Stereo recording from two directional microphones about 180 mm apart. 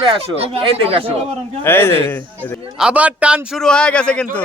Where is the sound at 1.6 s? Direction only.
15° left (ahead or behind).